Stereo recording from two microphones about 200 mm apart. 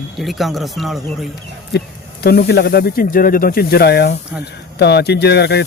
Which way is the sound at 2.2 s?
55° left (ahead or behind).